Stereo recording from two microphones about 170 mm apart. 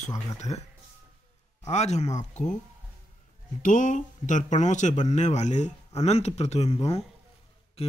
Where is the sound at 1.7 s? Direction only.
40° left (ahead or behind).